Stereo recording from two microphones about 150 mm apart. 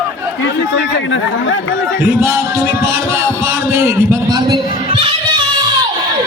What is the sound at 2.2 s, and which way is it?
Music, 20° right (ahead or behind).